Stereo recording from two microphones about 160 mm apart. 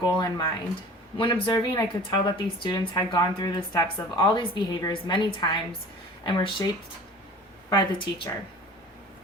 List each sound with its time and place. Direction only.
0.0 s speech: 25° left (ahead or behind)
7.7 s speech: 30° left (ahead or behind)